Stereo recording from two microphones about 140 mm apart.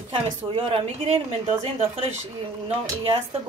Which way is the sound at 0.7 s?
45° right (ahead or behind).